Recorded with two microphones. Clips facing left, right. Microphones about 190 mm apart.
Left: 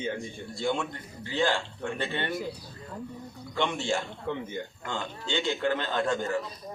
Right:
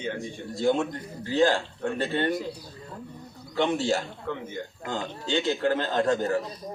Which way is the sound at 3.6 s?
40° right (ahead or behind).